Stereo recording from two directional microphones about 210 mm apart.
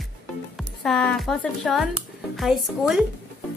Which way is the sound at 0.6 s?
Centre (ahead or behind).